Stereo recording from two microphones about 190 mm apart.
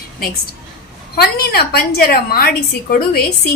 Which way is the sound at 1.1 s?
55° left (ahead or behind).